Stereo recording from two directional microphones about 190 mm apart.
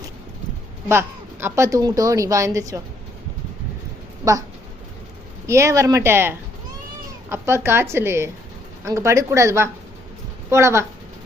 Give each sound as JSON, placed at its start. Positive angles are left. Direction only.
{"t": 0.9, "sound": "a woman's voice", "side_deg": -10}
{"t": 5.5, "sound": "a woman's voice", "side_deg": -15}